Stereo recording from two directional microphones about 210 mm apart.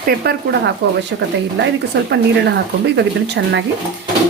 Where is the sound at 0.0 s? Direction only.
50° right (ahead or behind).